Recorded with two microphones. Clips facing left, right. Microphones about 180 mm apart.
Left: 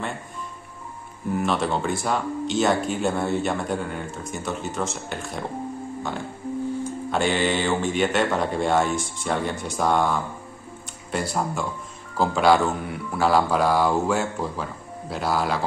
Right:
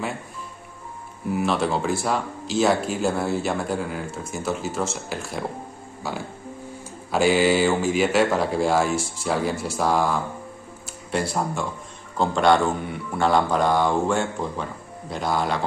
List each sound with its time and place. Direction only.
1.3 s speech: centre (ahead or behind)
7.1 s speech: 5° right (ahead or behind)